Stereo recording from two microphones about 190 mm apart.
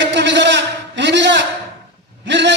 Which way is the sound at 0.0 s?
70° right (ahead or behind).